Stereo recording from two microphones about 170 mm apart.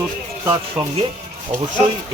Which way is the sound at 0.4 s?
25° right (ahead or behind).